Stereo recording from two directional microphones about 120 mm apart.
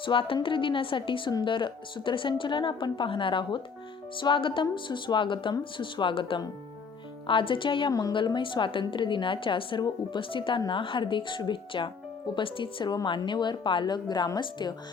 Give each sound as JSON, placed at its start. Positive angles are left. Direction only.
{"t": 0.0, "sound": "speech", "side_deg": 45}